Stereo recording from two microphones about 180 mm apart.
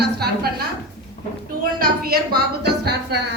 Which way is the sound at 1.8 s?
60° right (ahead or behind).